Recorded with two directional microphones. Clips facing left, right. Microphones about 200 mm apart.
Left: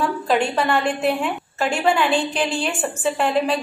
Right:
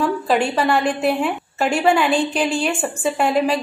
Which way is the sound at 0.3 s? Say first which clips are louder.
Right 1 dB; 10° right (ahead or behind).